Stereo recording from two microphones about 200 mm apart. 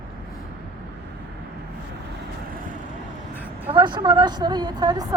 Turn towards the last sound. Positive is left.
turn(degrees=-20)  # may be behind; listen again after turning